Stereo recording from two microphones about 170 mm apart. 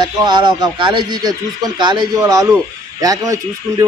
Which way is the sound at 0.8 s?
25° right (ahead or behind).